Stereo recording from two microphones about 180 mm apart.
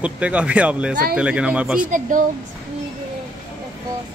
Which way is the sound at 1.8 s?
45° right (ahead or behind).